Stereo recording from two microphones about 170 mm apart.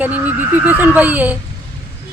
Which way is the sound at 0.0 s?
10° right (ahead or behind).